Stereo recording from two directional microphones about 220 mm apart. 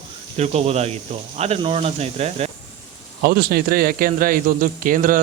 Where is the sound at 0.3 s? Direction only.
30° right (ahead or behind).